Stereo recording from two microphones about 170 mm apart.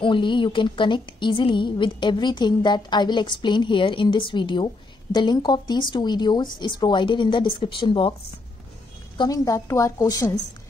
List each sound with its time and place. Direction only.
0.0 s a woman's voice: 30° left (ahead or behind)
9.2 s a woman's voice: 20° left (ahead or behind)